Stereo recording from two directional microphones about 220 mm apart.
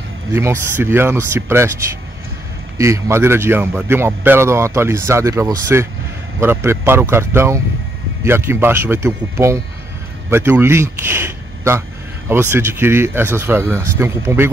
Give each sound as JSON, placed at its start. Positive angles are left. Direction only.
{"t": 0.3, "sound": "a man's voice", "side_deg": -10}
{"t": 2.8, "sound": "a man's voice", "side_deg": -15}